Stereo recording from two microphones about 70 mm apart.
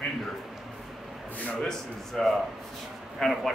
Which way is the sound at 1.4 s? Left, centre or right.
Centre.